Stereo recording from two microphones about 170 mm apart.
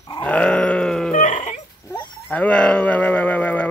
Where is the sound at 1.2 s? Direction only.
45° left (ahead or behind).